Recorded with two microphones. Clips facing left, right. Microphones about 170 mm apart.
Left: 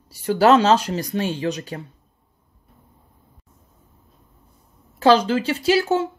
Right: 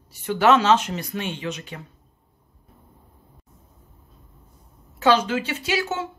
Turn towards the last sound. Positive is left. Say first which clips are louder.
# left 7 dB
turn(degrees=35)  # may be behind; listen again after turning